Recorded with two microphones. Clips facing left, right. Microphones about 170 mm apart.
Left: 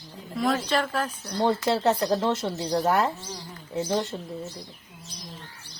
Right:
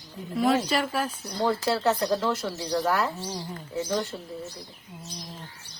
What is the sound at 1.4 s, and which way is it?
Speech, 25° left (ahead or behind).